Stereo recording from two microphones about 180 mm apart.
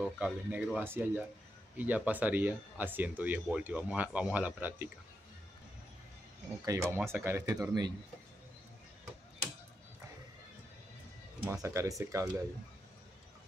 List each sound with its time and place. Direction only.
0.0 s speech: 5° right (ahead or behind)
6.6 s speech: 15° right (ahead or behind)
11.6 s speech: 15° right (ahead or behind)